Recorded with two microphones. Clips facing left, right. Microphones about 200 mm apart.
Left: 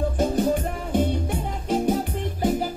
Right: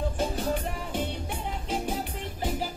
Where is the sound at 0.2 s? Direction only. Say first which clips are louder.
Left 9 dB; 45° left (ahead or behind).